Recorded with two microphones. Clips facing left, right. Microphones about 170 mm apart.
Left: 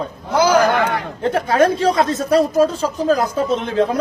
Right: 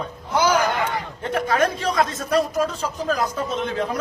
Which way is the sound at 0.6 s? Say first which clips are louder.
Left 7 dB; 70° left (ahead or behind).